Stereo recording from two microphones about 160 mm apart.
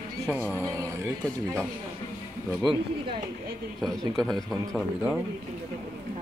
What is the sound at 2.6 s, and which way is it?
Speech, 30° right (ahead or behind).